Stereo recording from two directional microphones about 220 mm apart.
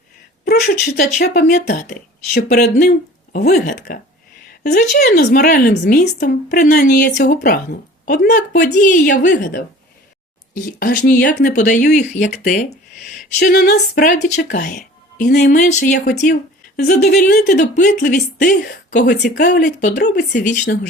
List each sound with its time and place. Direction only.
0.4 s a woman's voice: 40° left (ahead or behind)